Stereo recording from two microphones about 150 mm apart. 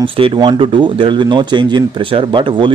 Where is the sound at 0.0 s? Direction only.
35° right (ahead or behind).